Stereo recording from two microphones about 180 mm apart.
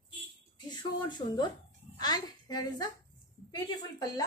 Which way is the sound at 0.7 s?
25° left (ahead or behind).